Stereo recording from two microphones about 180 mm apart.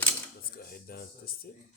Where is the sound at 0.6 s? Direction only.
55° left (ahead or behind).